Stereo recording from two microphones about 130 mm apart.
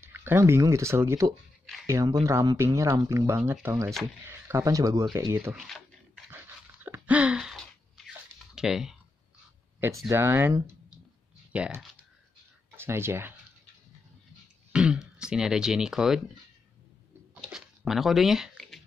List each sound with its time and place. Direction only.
0.0 s speech: 15° right (ahead or behind)
5.5 s speech: centre (ahead or behind)
6.3 s dog: 15° right (ahead or behind)
8.1 s a sound: 5° right (ahead or behind)
9.8 s speech: 20° right (ahead or behind)
14.7 s throat clearing: 5° right (ahead or behind)
17.3 s typing: 5° right (ahead or behind)